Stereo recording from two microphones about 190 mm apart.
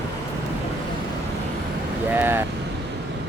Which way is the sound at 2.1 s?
10° right (ahead or behind).